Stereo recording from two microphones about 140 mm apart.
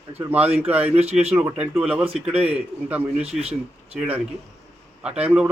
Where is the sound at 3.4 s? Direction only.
45° right (ahead or behind).